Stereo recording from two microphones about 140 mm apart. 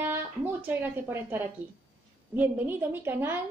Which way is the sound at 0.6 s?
15° right (ahead or behind).